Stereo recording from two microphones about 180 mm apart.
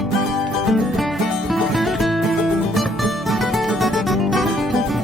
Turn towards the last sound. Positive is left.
turn(degrees=0)  # may be behind; listen again after turning